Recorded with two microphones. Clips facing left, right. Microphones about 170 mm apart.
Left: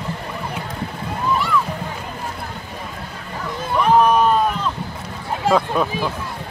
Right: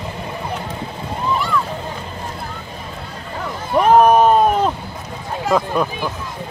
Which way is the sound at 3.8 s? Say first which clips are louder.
Right 4 dB; 45° right (ahead or behind).